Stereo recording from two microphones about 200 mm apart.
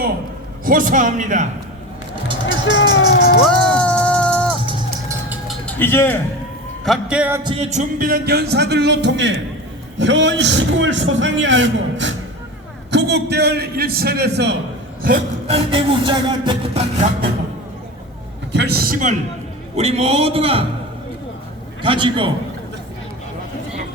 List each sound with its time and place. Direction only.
0.6 s a man's voice: 45° right (ahead or behind)
2.5 s speech: 65° left (ahead or behind)
3.4 s a sound: 5° left (ahead or behind)
5.6 s speech: 10° left (ahead or behind)
6.8 s speech: centre (ahead or behind)
7.4 s music: 30° right (ahead or behind); by 9.4 s 65° right (ahead or behind)
10.0 s a man's voice: 65° right (ahead or behind)
12.9 s music: 60° right (ahead or behind)
15.4 s music: 30° right (ahead or behind)
18.5 s a man's voice: 55° right (ahead or behind)
19.7 s a man's voice: 30° right (ahead or behind)
21.8 s music: 25° right (ahead or behind)